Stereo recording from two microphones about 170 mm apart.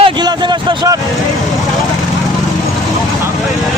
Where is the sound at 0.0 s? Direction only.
25° right (ahead or behind).